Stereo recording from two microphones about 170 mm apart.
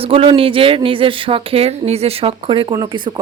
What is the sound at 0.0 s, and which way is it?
Speech, 35° right (ahead or behind).